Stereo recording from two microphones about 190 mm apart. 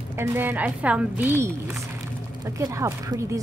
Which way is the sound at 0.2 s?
10° right (ahead or behind).